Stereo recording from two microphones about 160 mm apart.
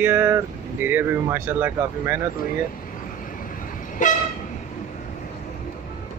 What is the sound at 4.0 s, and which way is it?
Train, 50° left (ahead or behind).